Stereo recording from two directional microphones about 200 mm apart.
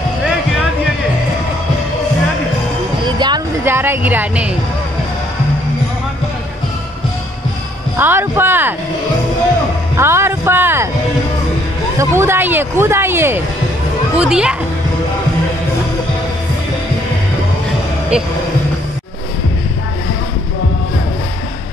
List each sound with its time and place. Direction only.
3.2 s a sound: 20° right (ahead or behind)
3.6 s a woman's voice: 10° right (ahead or behind)
8.0 s speech: 10° right (ahead or behind)
9.9 s speech: 10° right (ahead or behind)
12.0 s a child's voice: 10° right (ahead or behind)